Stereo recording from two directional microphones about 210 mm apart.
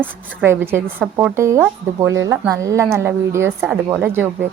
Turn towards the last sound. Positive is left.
turn(degrees=-10)  # may be behind; listen again after turning